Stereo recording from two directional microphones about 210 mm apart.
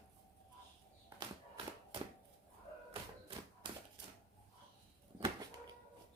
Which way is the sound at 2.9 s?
25° right (ahead or behind).